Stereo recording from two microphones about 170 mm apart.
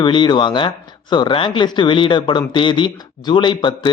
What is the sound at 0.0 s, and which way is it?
A man's voice, 30° left (ahead or behind).